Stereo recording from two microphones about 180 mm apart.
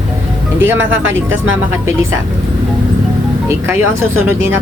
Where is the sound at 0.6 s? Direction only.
10° right (ahead or behind).